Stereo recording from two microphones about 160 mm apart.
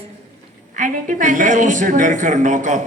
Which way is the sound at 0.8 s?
55° right (ahead or behind).